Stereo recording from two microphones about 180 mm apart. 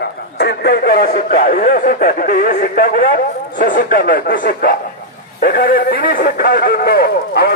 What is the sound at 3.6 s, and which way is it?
A man's voice, 55° left (ahead or behind).